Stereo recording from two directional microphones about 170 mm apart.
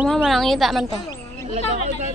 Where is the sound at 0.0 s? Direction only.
Centre (ahead or behind).